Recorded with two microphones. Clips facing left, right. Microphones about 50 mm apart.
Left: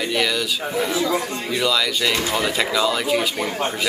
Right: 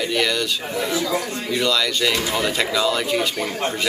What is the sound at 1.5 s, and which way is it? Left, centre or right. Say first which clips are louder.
Speech: even; centre.